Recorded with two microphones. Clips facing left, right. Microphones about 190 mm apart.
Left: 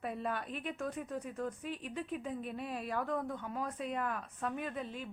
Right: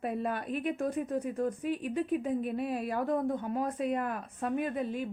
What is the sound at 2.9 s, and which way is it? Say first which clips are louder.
Speech: right 5 dB; 40° right (ahead or behind).